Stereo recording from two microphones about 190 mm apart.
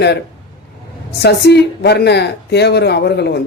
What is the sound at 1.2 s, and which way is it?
Speech, 60° left (ahead or behind).